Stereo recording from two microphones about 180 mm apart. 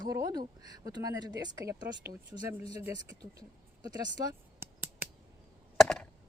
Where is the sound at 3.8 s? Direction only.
20° right (ahead or behind).